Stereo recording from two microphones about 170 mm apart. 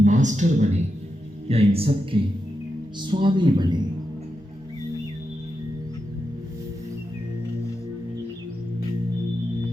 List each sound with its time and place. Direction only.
0.0 s a man's voice: 45° right (ahead or behind)
1.5 s music: 35° right (ahead or behind)
3.0 s speech: 30° right (ahead or behind)